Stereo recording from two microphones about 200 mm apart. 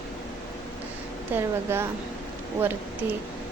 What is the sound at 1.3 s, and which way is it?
Speech, 10° right (ahead or behind).